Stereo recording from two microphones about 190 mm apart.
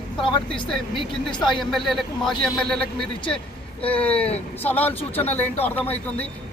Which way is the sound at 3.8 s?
5° left (ahead or behind).